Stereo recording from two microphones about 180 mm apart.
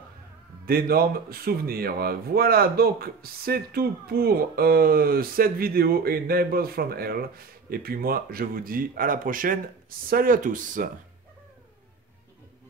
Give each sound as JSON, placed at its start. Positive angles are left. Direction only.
{"t": 0.7, "sound": "speech", "side_deg": -55}